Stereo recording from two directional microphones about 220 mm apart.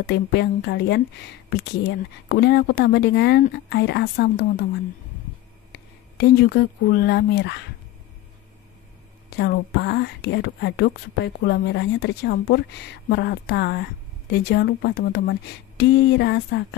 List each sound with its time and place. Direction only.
0.0 s speech: 50° left (ahead or behind)
5.7 s speech: 50° left (ahead or behind)
9.4 s speech: 50° left (ahead or behind)